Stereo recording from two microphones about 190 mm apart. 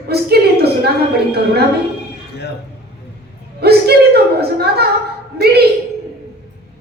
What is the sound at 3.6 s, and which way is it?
A woman's voice, 55° right (ahead or behind).